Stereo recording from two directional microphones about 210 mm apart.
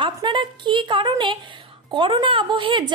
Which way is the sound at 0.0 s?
20° right (ahead or behind).